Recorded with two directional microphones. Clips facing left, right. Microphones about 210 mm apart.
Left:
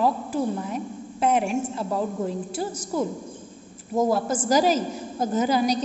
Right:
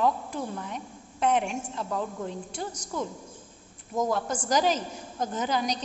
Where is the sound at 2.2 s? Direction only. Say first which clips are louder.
Left 6 dB; 5° left (ahead or behind).